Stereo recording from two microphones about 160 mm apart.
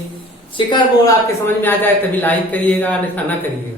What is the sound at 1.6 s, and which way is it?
A man's voice, 10° left (ahead or behind).